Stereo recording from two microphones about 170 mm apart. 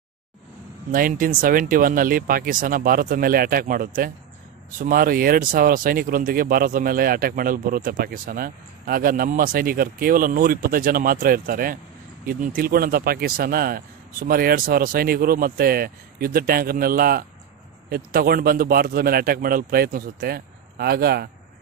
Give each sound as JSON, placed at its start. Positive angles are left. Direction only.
{"t": 0.9, "sound": "speech", "side_deg": -55}